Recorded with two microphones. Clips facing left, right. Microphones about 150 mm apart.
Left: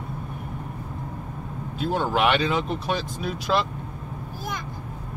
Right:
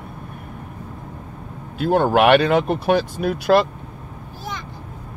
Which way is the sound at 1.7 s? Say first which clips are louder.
Right 8 dB; 60° right (ahead or behind).